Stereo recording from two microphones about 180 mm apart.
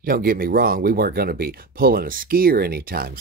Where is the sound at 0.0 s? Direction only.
55° right (ahead or behind).